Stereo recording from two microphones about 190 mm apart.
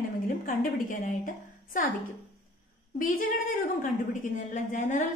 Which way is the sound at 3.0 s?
45° left (ahead or behind).